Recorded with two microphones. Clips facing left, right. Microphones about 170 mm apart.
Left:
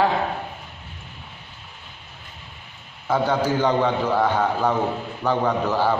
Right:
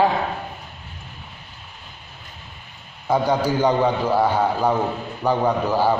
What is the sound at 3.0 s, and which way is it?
A man's voice, 15° right (ahead or behind).